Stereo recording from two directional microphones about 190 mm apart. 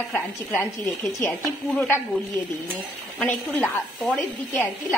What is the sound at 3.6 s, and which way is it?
A woman's voice, 5° left (ahead or behind).